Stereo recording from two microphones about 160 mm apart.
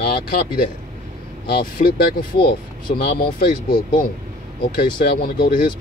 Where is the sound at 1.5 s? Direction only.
75° left (ahead or behind).